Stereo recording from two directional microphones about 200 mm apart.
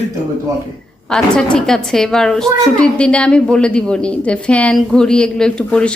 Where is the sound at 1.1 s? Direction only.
5° left (ahead or behind).